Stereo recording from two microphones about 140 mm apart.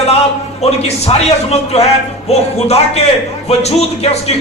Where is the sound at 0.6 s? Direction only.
50° left (ahead or behind).